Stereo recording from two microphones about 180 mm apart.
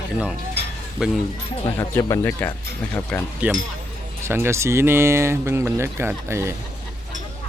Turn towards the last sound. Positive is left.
turn(degrees=-15)  # may be behind; listen again after turning